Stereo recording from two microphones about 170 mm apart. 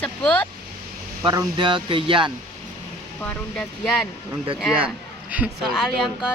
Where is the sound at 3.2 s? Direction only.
10° left (ahead or behind).